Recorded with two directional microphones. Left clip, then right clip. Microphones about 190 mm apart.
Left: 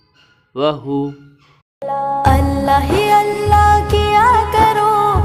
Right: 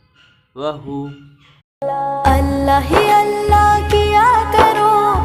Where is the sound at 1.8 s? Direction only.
Centre (ahead or behind).